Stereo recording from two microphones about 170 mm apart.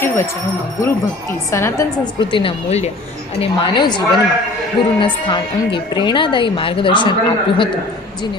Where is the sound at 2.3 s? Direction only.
30° left (ahead or behind).